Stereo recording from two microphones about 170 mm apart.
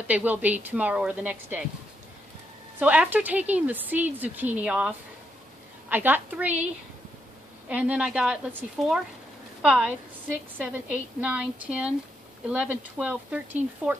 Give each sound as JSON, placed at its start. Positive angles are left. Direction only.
{"t": 0.1, "sound": "speech", "side_deg": -10}
{"t": 2.8, "sound": "speech", "side_deg": -10}
{"t": 7.6, "sound": "a woman's voice", "side_deg": -5}